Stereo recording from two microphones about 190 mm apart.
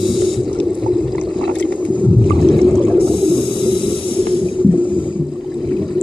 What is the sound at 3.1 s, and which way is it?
Snake, 25° left (ahead or behind).